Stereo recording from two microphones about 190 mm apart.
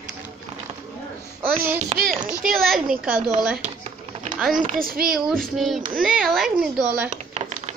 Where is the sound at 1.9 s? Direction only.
50° right (ahead or behind).